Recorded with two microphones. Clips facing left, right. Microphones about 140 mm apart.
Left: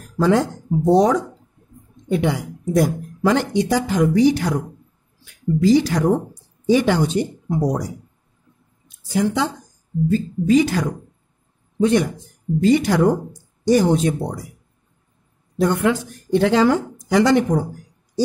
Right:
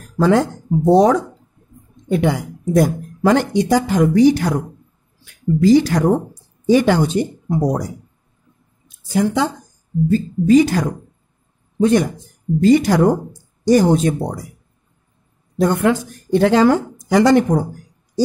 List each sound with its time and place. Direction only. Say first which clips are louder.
0.2 s speech: right 2 dB; 55° right (ahead or behind)
2.0 s a woman's voice: right 3 dB; 50° right (ahead or behind)
8.8 s a sound: right 2 dB; 50° right (ahead or behind)
10.0 s a woman's voice: right 3 dB; 40° right (ahead or behind)
15.5 s a woman's voice: right 2 dB; 40° right (ahead or behind)